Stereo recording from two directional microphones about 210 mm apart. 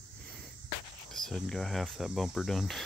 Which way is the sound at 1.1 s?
Centre (ahead or behind).